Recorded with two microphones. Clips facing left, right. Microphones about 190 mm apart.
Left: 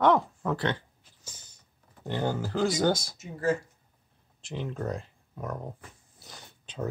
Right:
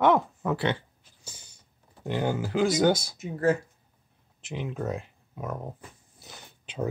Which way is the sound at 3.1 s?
55° right (ahead or behind).